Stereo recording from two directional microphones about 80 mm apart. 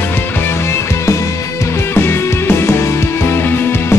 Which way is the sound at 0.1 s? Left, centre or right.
Left.